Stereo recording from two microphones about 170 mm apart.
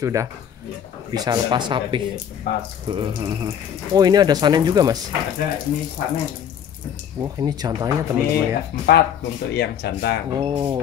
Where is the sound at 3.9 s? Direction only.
25° right (ahead or behind).